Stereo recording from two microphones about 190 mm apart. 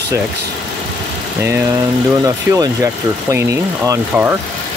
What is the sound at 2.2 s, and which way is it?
Speech, 15° right (ahead or behind).